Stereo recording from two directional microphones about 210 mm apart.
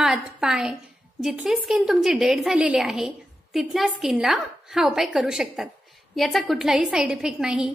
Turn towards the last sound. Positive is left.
turn(degrees=-5)  # may be behind; listen again after turning